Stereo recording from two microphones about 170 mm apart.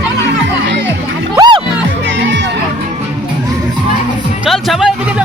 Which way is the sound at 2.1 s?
90° right.